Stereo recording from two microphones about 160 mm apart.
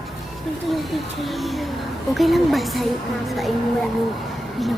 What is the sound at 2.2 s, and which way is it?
Speech, centre (ahead or behind).